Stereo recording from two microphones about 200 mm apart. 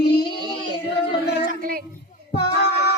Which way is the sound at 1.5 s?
45° right (ahead or behind).